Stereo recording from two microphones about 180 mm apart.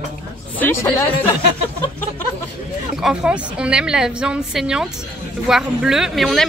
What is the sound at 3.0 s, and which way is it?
Speech, 5° right (ahead or behind).